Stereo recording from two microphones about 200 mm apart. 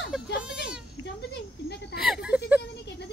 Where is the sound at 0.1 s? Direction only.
5° right (ahead or behind).